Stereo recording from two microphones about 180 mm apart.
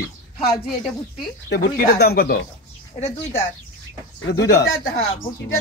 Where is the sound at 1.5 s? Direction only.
60° left (ahead or behind).